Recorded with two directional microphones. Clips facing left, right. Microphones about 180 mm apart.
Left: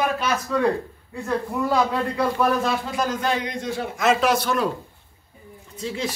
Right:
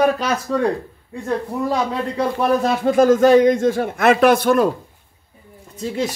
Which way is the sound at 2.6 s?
50° right (ahead or behind).